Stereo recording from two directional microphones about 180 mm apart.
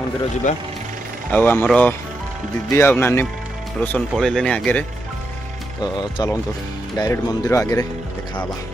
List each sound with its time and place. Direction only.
1.3 s speech: 10° left (ahead or behind)
5.8 s speech: 25° left (ahead or behind)